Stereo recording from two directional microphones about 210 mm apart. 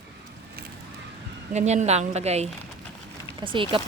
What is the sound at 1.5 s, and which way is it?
A woman's voice, 35° right (ahead or behind).